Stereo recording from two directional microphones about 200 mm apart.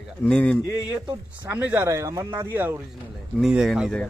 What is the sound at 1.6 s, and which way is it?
A man's voice, 10° right (ahead or behind).